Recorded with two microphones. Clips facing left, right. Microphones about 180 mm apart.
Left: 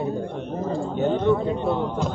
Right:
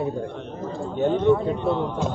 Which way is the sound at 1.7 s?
15° left (ahead or behind).